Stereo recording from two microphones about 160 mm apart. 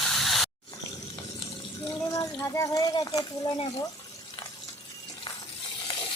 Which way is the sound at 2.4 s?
20° left (ahead or behind).